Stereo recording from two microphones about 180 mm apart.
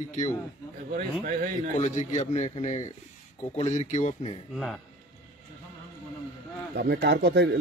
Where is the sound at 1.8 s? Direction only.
40° left (ahead or behind).